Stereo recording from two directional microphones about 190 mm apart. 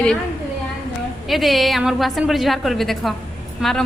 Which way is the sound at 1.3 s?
Centre (ahead or behind).